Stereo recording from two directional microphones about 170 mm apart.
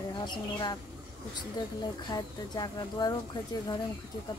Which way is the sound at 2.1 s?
25° left (ahead or behind).